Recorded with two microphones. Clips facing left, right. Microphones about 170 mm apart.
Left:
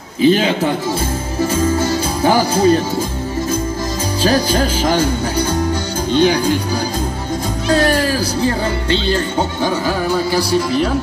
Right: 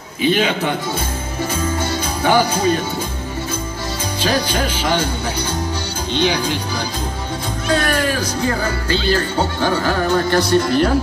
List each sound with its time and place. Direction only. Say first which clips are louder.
0.2 s music: left 4 dB; 35° left (ahead or behind)
1.5 s speech: left 6 dB; 40° left (ahead or behind)
4.2 s music: left 4 dB; 40° left (ahead or behind)
6.1 s speech: left 5 dB; 45° left (ahead or behind)
7.6 s speech: left 3 dB; 35° left (ahead or behind); by 11.0 s centre (ahead or behind)